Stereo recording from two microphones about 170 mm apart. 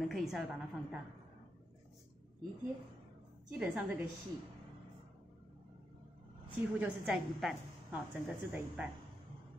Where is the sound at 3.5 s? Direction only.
5° right (ahead or behind).